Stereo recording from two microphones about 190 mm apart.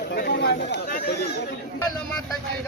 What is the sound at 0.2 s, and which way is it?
Chatter, 60° left (ahead or behind).